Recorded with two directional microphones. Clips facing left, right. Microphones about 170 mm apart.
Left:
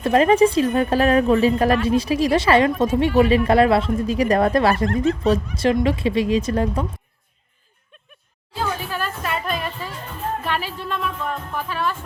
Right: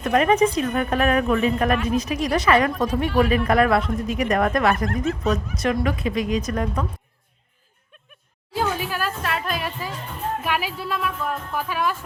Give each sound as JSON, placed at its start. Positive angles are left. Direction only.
{"t": 0.0, "sound": "a woman's voice", "side_deg": 30}
{"t": 8.5, "sound": "music", "side_deg": -10}
{"t": 10.4, "sound": "speech", "side_deg": -10}